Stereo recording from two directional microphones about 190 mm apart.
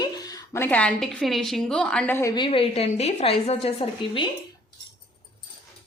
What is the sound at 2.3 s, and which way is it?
A woman's voice, 25° left (ahead or behind).